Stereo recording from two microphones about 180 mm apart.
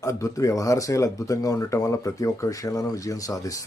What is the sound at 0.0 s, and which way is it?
Speech, 20° left (ahead or behind).